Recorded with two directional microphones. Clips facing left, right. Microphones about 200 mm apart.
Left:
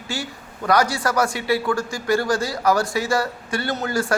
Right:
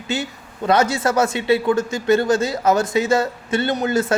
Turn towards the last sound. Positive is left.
turn(degrees=-20)  # may be behind; listen again after turning